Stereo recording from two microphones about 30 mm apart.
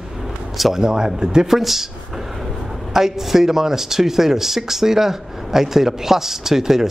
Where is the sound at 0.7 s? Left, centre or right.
Right.